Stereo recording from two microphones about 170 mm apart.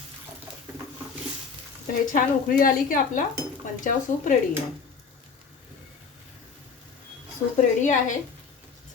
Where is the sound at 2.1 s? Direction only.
55° left (ahead or behind).